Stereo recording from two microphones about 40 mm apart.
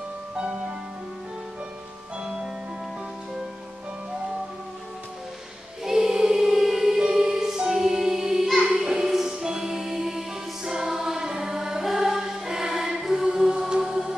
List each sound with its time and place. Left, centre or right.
0.5 s music: right
5.9 s music: centre